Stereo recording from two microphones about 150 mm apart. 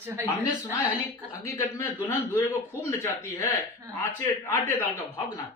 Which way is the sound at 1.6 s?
15° left (ahead or behind).